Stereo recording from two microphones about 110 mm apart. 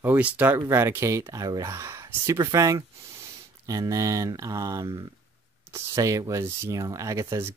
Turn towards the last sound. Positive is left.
turn(degrees=-25)  # may be behind; listen again after turning